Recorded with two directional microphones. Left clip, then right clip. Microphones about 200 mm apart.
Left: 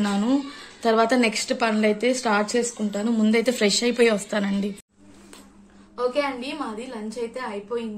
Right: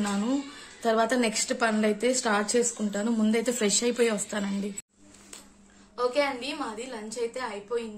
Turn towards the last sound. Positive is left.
turn(degrees=0)  # may be behind; listen again after turning